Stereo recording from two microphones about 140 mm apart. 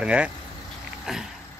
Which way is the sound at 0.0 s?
10° right (ahead or behind).